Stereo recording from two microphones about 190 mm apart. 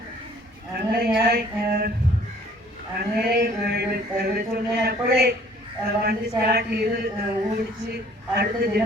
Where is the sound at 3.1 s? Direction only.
55° right (ahead or behind).